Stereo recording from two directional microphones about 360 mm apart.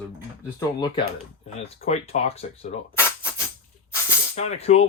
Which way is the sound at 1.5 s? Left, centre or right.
Centre.